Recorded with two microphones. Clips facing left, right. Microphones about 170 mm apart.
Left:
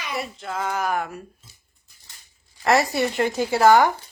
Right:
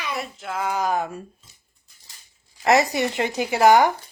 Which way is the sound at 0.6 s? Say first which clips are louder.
Right 2 dB; 15° right (ahead or behind).